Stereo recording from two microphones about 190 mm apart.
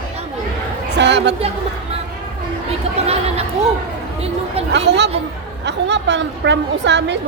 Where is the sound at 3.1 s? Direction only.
35° right (ahead or behind).